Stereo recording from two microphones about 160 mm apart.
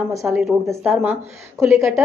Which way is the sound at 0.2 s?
5° right (ahead or behind).